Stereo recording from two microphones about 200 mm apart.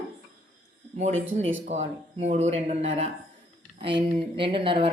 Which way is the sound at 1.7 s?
35° right (ahead or behind).